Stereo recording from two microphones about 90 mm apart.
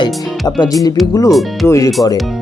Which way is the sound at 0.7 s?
40° left (ahead or behind).